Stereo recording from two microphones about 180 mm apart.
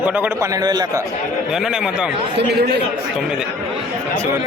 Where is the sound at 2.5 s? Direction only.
65° right (ahead or behind).